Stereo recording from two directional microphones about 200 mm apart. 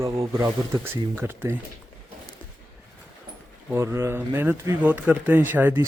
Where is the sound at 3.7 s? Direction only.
15° right (ahead or behind).